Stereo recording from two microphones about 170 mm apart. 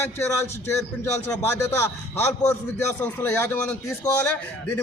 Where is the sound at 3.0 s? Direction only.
10° left (ahead or behind).